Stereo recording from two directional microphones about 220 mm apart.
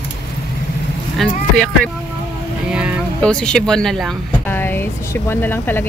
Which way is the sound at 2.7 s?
5° right (ahead or behind).